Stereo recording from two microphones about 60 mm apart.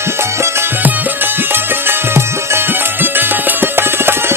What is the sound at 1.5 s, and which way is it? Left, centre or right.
Music, right.